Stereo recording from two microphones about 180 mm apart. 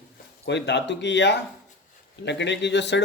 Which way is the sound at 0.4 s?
75° left (ahead or behind).